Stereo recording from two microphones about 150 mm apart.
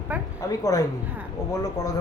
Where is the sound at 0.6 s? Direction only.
25° left (ahead or behind).